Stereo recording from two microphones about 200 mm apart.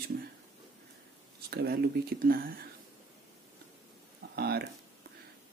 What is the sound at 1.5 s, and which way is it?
Speech, 50° right (ahead or behind).